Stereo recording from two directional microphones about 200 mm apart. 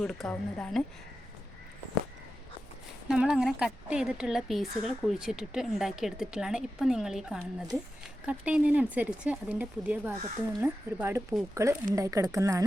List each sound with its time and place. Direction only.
0.0 s a woman's voice: 5° left (ahead or behind)
3.1 s a woman's voice: 5° right (ahead or behind)